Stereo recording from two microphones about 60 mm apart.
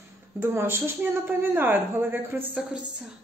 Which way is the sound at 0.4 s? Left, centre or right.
Right.